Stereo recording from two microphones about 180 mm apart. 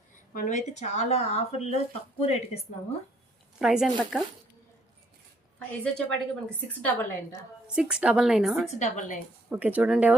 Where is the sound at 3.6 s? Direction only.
5° right (ahead or behind).